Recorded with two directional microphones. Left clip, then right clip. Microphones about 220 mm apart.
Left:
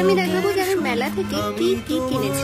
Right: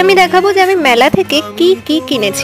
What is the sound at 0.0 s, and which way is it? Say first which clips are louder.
Speech: right 11 dB; 35° right (ahead or behind).